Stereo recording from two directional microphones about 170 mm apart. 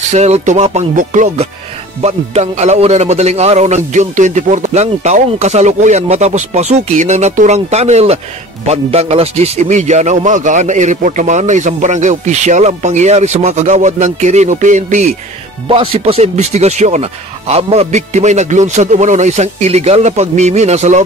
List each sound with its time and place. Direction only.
0.1 s a man's voice: 40° right (ahead or behind)
15.7 s speech: 30° right (ahead or behind)